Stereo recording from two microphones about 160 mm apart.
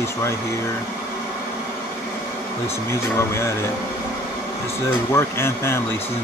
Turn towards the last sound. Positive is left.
turn(degrees=15)  # may be behind; listen again after turning